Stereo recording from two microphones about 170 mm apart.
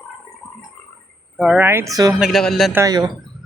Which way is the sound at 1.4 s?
10° right (ahead or behind).